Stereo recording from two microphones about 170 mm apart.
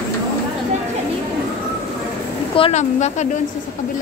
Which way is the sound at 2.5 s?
35° left (ahead or behind).